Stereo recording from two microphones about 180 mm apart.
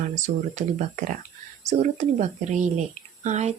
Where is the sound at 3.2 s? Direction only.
40° right (ahead or behind).